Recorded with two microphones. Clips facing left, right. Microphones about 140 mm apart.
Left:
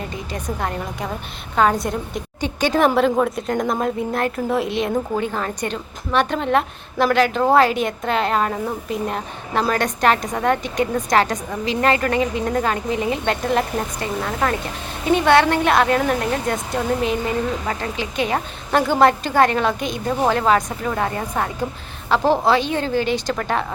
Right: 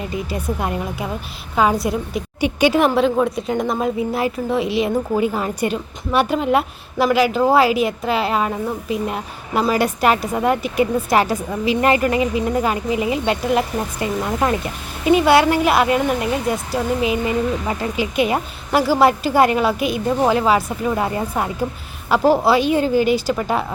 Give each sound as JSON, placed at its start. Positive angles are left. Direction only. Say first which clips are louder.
{"t": 0.3, "sound": "a woman's voice", "louder": "even", "side_deg": -10}
{"t": 14.0, "sound": "a woman's voice", "louder": "right 4 dB", "side_deg": -15}